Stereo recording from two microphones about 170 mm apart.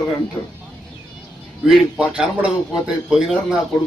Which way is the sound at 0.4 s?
25° left (ahead or behind).